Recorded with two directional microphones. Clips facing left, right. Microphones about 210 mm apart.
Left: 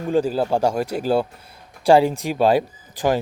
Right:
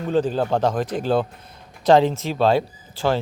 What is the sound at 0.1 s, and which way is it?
Speech, 10° left (ahead or behind).